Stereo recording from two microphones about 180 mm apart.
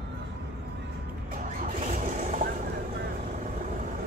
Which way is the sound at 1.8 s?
45° right (ahead or behind).